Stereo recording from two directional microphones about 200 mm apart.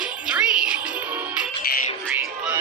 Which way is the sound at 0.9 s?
10° right (ahead or behind).